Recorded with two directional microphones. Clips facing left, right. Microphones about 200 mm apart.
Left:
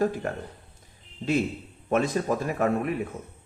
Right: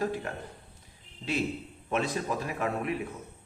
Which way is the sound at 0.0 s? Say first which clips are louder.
Left 5 dB; 45° left (ahead or behind).